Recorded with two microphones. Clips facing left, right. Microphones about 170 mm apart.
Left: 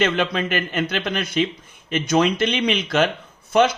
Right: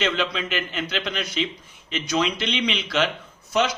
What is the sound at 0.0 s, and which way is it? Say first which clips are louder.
Speech: left 4 dB; 50° left (ahead or behind).